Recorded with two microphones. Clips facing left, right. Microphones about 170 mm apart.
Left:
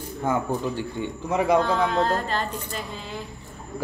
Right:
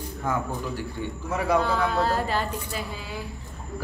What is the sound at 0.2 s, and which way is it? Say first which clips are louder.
A man's voice: left 4 dB; 25° left (ahead or behind).